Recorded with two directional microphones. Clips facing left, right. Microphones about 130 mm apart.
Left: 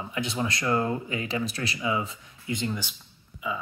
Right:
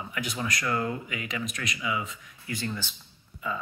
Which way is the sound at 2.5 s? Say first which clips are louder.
Left 3 dB; 20° left (ahead or behind).